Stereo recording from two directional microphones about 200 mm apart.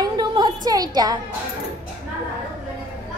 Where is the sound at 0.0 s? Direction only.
20° right (ahead or behind).